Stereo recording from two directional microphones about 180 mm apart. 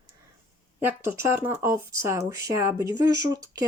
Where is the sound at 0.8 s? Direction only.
15° right (ahead or behind).